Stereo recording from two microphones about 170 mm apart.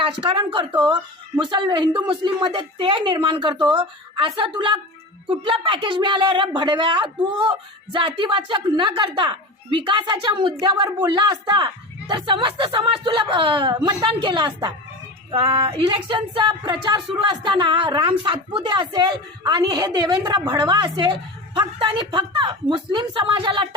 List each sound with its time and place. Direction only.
0.0 s a woman's voice: 30° right (ahead or behind)